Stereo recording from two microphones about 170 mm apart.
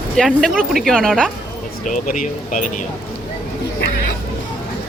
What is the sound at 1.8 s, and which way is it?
Speech, 50° left (ahead or behind).